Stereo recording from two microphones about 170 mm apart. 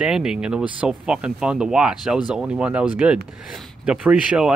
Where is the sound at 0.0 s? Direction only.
5° right (ahead or behind).